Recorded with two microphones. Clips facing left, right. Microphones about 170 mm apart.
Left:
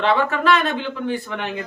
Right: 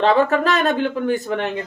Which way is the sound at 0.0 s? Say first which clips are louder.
Right 3 dB; 40° right (ahead or behind).